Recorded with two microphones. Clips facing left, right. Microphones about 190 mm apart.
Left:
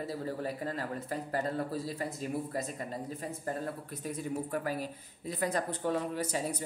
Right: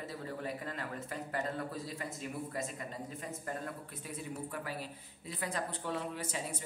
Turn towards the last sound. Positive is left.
turn(degrees=40)  # may be behind; listen again after turning